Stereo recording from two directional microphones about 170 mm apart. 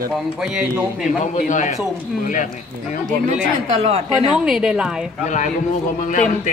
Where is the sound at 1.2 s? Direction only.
45° left (ahead or behind).